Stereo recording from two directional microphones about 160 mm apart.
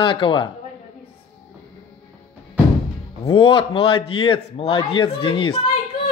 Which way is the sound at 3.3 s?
35° left (ahead or behind).